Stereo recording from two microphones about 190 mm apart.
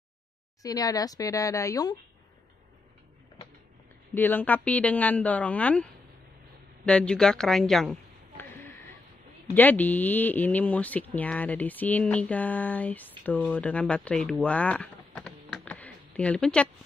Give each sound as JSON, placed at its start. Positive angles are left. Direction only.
{"t": 0.6, "sound": "speech", "side_deg": 20}
{"t": 4.1, "sound": "speech", "side_deg": 10}
{"t": 6.9, "sound": "a sound", "side_deg": 5}
{"t": 9.5, "sound": "speech", "side_deg": 10}